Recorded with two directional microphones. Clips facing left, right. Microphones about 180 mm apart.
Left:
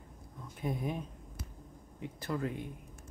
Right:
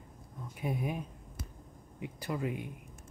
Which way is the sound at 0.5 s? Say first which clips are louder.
Even; 10° right (ahead or behind).